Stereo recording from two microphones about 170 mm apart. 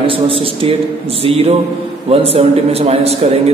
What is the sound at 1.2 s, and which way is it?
A man's voice, 35° right (ahead or behind).